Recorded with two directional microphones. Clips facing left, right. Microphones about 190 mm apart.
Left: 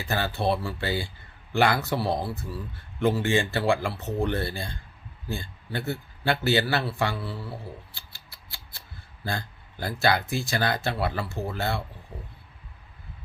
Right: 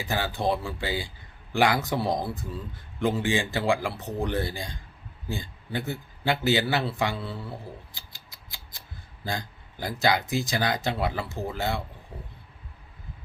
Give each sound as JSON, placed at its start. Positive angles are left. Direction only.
{"t": 0.0, "sound": "speech", "side_deg": -15}
{"t": 7.5, "sound": "a sound", "side_deg": -15}
{"t": 9.2, "sound": "speech", "side_deg": -15}